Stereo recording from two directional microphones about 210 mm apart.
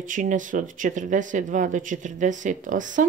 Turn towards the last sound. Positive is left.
turn(degrees=-40)  # may be behind; listen again after turning